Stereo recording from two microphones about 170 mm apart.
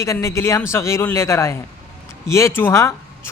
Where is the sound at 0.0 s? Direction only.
15° left (ahead or behind).